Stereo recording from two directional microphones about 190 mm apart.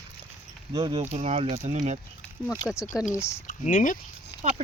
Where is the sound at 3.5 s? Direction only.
45° left (ahead or behind).